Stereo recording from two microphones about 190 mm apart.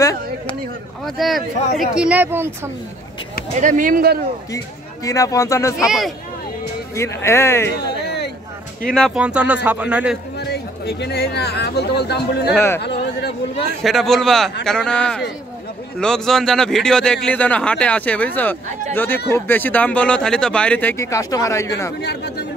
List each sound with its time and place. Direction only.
0.0 s a sound: 15° left (ahead or behind)
1.0 s a man's voice: centre (ahead or behind)
3.5 s speech: 40° right (ahead or behind)
5.0 s speech: 15° left (ahead or behind)
5.9 s a man's voice: centre (ahead or behind)
7.0 s speech: 15° left (ahead or behind)
7.9 s a sound: 60° left (ahead or behind)
8.8 s speech: 5° left (ahead or behind)
10.4 s speech: 60° left (ahead or behind)
12.5 s speech: 10° left (ahead or behind)
12.8 s a sound: 60° left (ahead or behind)
13.8 s a man's voice: centre (ahead or behind)
22.0 s speech: 60° left (ahead or behind)